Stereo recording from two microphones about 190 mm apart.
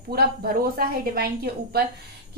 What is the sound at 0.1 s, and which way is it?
A woman's voice, 55° right (ahead or behind).